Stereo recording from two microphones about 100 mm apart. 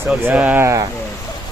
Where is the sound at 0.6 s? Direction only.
30° right (ahead or behind).